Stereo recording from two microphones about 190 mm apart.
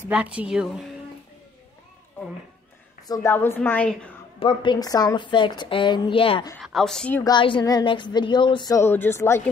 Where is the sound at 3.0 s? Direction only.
15° left (ahead or behind).